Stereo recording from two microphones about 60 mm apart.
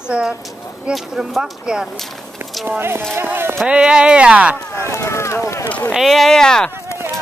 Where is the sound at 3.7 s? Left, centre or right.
Centre.